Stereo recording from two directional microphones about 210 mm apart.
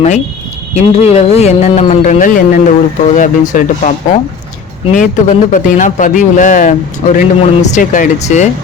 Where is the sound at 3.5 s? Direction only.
35° left (ahead or behind).